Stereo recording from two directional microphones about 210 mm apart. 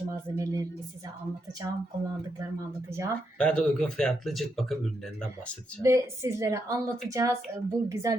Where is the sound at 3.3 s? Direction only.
5° left (ahead or behind).